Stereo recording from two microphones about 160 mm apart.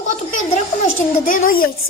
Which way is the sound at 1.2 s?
60° left (ahead or behind).